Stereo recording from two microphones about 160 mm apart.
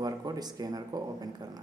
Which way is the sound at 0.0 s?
25° right (ahead or behind).